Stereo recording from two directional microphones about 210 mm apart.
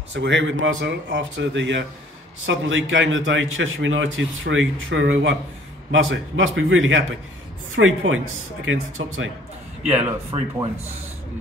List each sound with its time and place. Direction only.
0.1 s a man's voice: 60° right (ahead or behind)
9.8 s speech: 5° right (ahead or behind)